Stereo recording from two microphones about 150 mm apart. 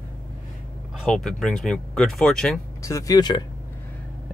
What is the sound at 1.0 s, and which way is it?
Speech, centre (ahead or behind).